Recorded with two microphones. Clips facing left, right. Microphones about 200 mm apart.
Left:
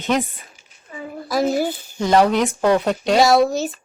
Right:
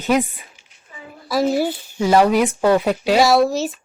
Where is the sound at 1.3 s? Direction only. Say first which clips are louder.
Right 1 dB; centre (ahead or behind).